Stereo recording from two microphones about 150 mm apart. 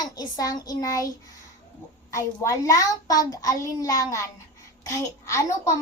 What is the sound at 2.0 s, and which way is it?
A child's voice, 20° left (ahead or behind).